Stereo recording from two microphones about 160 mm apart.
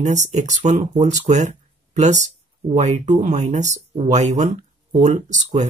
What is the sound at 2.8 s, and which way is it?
Speech, 45° right (ahead or behind).